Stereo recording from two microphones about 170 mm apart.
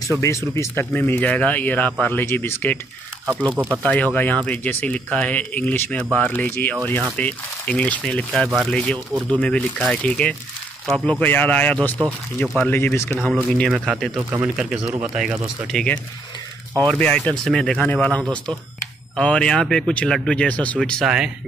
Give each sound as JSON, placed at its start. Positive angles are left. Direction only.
{"t": 0.1, "sound": "speech", "side_deg": -15}
{"t": 0.6, "sound": "speech", "side_deg": 15}
{"t": 3.5, "sound": "speech", "side_deg": -10}
{"t": 3.8, "sound": "speech", "side_deg": 10}
{"t": 13.2, "sound": "speech", "side_deg": 0}